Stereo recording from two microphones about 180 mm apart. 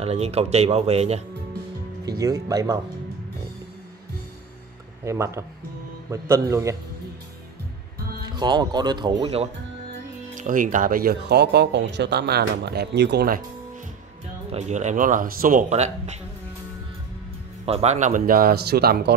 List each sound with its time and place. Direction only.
0.0 s speech: 35° right (ahead or behind)
2.0 s speech: 20° right (ahead or behind)
5.0 s a man's voice: 15° right (ahead or behind)
8.3 s speech: 25° right (ahead or behind)
10.3 s speech: 45° right (ahead or behind); by 13.4 s 65° right (ahead or behind)
14.5 s speech: 40° right (ahead or behind)
17.6 s speech: 35° right (ahead or behind); by 19.1 s 60° right (ahead or behind)